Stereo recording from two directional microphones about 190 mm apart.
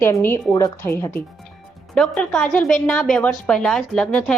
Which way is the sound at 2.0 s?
5° left (ahead or behind).